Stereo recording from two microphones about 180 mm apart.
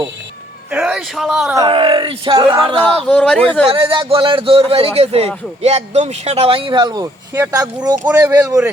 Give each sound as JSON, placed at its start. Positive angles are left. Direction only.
{"t": 0.7, "sound": "speech", "side_deg": -5}
{"t": 1.5, "sound": "speech", "side_deg": -25}
{"t": 3.0, "sound": "speech", "side_deg": 5}
{"t": 3.7, "sound": "a man's voice", "side_deg": -30}